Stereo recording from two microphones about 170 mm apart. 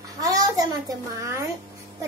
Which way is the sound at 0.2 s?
20° right (ahead or behind).